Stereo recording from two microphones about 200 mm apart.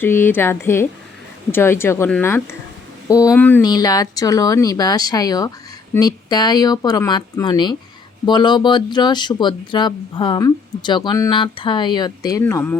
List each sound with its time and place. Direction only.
0.0 s speech: 10° left (ahead or behind)